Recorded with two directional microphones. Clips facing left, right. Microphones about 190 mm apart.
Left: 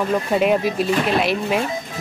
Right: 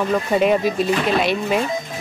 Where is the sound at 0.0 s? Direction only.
5° left (ahead or behind).